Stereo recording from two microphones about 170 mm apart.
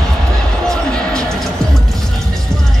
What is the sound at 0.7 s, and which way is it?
Basketball bounce, 5° left (ahead or behind).